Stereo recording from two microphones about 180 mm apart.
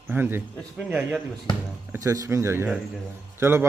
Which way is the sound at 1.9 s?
20° right (ahead or behind).